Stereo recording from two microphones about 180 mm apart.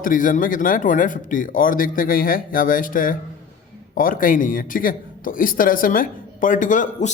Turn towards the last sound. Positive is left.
turn(degrees=45)  # may be behind; listen again after turning